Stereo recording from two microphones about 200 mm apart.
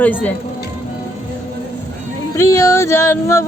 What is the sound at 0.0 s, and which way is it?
Speech, 10° left (ahead or behind).